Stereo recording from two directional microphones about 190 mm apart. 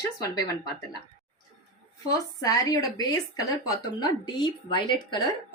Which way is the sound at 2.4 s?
20° left (ahead or behind).